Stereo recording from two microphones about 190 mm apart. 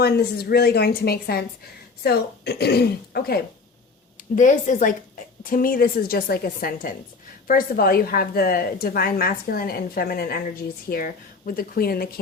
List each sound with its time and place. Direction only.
0.0 s a woman's voice: 55° left (ahead or behind)
4.4 s a woman's voice: 40° left (ahead or behind)